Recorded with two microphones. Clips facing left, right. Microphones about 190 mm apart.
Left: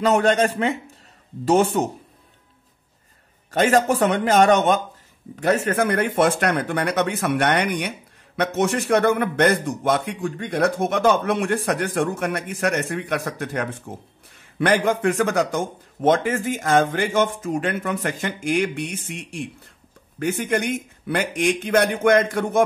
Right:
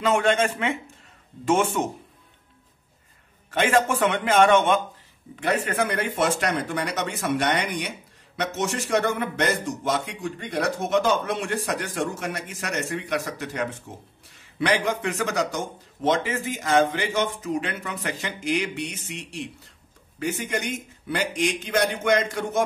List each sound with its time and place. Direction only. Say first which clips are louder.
0.0 s speech: left 3 dB; 40° left (ahead or behind)
3.4 s a man's voice: left 4 dB; 40° left (ahead or behind)